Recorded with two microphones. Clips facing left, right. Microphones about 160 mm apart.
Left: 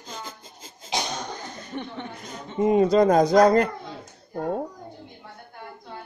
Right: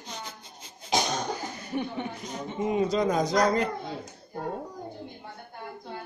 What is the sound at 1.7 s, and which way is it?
Speech, 10° right (ahead or behind).